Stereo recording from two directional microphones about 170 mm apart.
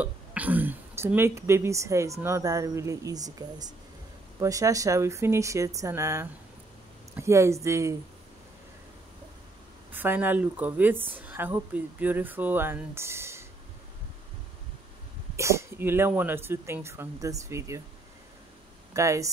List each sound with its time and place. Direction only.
0.0 s speech: 10° right (ahead or behind)
9.9 s speech: 10° right (ahead or behind)
15.3 s speech: 15° right (ahead or behind)
18.9 s speech: 20° right (ahead or behind)